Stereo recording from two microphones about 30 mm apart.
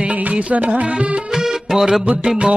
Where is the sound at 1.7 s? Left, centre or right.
Centre.